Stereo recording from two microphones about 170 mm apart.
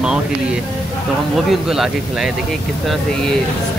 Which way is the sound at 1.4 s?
Centre (ahead or behind).